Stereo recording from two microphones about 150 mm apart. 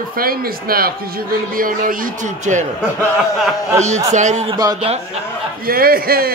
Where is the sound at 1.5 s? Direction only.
70° right (ahead or behind); by 2.6 s 55° right (ahead or behind).